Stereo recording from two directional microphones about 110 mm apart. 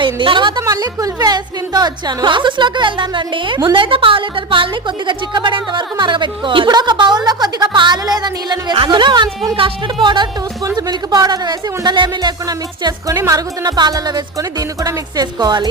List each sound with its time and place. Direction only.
0.0 s a woman's voice: 45° right (ahead or behind)
0.6 s a woman's voice: 35° right (ahead or behind)